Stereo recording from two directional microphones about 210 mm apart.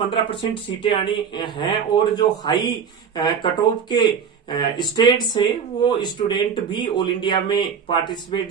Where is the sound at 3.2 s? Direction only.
20° left (ahead or behind).